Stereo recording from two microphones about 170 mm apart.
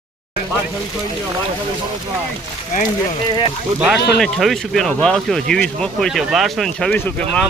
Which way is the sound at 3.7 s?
10° right (ahead or behind).